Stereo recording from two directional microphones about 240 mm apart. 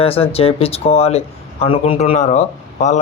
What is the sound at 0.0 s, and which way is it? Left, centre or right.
Speech, left.